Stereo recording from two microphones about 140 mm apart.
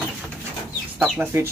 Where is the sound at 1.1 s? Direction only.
15° right (ahead or behind).